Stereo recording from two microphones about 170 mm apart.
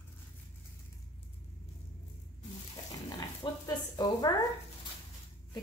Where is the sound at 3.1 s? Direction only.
20° left (ahead or behind).